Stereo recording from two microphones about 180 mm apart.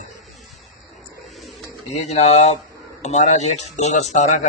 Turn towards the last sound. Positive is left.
turn(degrees=40)  # may be behind; listen again after turning